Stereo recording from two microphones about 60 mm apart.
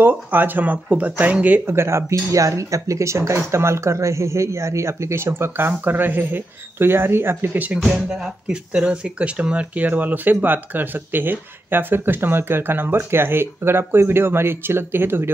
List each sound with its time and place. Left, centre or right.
0.1 s speech: right
1.7 s speech: right
7.8 s speech: centre; by 15.3 s right